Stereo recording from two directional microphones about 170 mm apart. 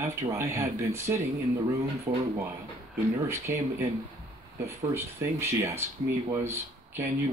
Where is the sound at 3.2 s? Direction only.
15° right (ahead or behind).